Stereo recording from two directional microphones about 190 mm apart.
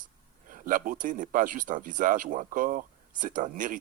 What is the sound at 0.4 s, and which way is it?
Speech, 45° right (ahead or behind).